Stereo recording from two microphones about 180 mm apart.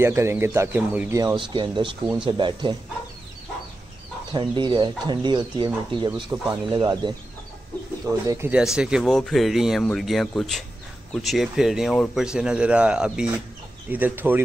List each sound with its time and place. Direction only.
0.0 s speech: 15° right (ahead or behind)
4.3 s speech: 25° right (ahead or behind)
8.3 s speech: 10° right (ahead or behind)